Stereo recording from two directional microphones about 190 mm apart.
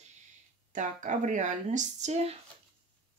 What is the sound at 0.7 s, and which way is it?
Speech, 40° right (ahead or behind).